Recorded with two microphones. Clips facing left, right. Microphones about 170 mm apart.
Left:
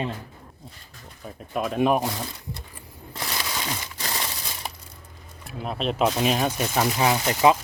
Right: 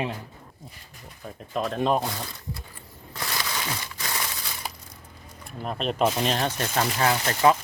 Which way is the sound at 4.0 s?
30° left (ahead or behind).